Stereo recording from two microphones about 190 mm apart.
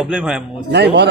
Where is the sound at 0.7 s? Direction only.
60° right (ahead or behind).